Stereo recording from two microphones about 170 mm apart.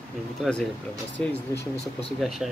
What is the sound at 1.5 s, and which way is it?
Speech, 15° left (ahead or behind).